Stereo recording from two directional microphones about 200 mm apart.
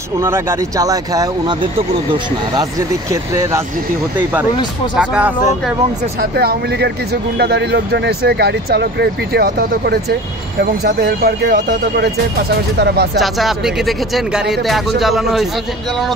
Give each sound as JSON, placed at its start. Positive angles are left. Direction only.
{"t": 0.2, "sound": "speech", "side_deg": -15}
{"t": 3.1, "sound": "speech", "side_deg": -15}
{"t": 4.9, "sound": "speech", "side_deg": -5}
{"t": 6.3, "sound": "speech", "side_deg": -55}
{"t": 12.7, "sound": "speech", "side_deg": -55}
{"t": 13.2, "sound": "speech", "side_deg": 0}